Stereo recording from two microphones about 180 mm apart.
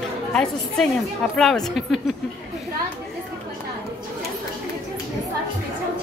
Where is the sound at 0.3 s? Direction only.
5° left (ahead or behind).